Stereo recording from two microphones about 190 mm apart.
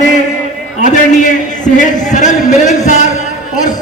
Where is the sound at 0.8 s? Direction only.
40° left (ahead or behind).